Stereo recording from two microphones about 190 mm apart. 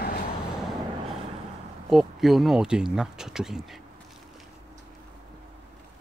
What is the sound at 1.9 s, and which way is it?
Speech, centre (ahead or behind).